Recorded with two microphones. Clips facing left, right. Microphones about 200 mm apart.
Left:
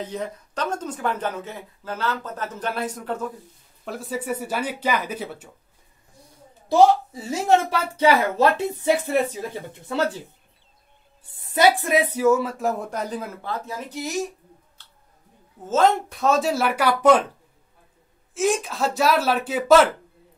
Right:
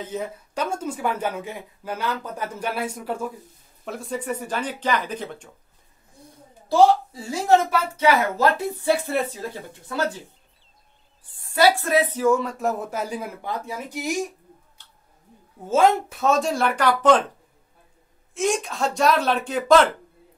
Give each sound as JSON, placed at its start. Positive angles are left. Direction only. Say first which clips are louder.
{"t": 0.0, "sound": "speech", "louder": "even", "side_deg": -5}
{"t": 3.8, "sound": "speech", "louder": "even", "side_deg": 0}
{"t": 6.7, "sound": "speech", "louder": "left 1 dB", "side_deg": 20}
{"t": 11.3, "sound": "speech", "louder": "even", "side_deg": 20}
{"t": 15.6, "sound": "speech", "louder": "right 1 dB", "side_deg": -10}
{"t": 18.3, "sound": "speech", "louder": "left 1 dB", "side_deg": 0}